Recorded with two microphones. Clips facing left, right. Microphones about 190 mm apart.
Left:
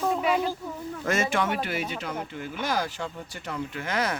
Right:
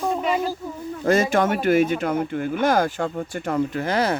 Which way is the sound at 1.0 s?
35° right (ahead or behind).